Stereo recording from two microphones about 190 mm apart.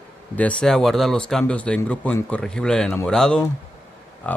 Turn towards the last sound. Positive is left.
turn(degrees=5)  # may be behind; listen again after turning